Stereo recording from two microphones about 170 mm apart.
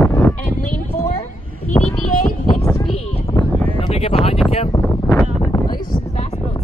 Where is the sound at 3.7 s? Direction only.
35° left (ahead or behind).